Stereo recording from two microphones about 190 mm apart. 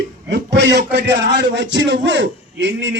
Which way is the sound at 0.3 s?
65° right (ahead or behind).